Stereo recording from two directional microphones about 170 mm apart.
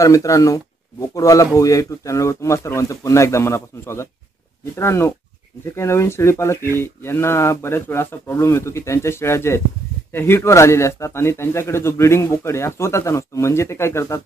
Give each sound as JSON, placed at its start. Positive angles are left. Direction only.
{"t": 0.0, "sound": "speech", "side_deg": 20}